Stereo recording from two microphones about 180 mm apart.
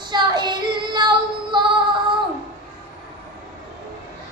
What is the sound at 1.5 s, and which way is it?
Female singing, 25° right (ahead or behind).